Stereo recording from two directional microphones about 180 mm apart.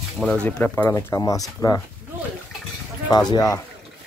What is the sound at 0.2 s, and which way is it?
Speech, 5° left (ahead or behind).